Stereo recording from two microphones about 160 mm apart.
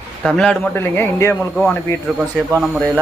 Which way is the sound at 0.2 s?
5° left (ahead or behind).